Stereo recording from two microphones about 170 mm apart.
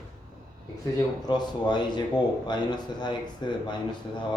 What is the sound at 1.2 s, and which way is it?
Speech, 25° left (ahead or behind).